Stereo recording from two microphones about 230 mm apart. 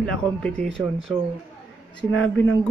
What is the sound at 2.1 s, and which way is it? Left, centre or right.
Speech, left.